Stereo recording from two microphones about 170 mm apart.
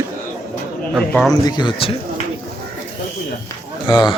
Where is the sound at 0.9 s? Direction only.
Centre (ahead or behind).